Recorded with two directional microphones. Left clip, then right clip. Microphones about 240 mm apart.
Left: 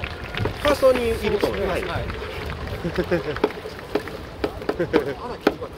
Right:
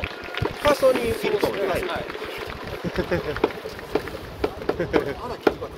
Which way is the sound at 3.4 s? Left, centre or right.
Left.